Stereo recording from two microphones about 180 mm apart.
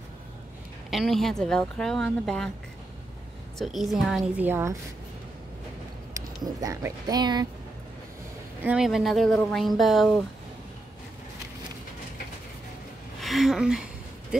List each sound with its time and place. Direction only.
0.8 s speech: centre (ahead or behind)
3.5 s speech: centre (ahead or behind)
6.1 s speech: 20° right (ahead or behind)
8.6 s speech: 5° right (ahead or behind)
13.2 s speech: centre (ahead or behind)
14.3 s a sound: 5° right (ahead or behind)